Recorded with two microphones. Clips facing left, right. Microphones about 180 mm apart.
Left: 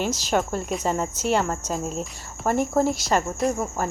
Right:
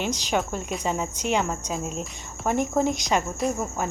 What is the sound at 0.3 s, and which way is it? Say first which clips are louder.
Speech: left 4 dB; 5° left (ahead or behind).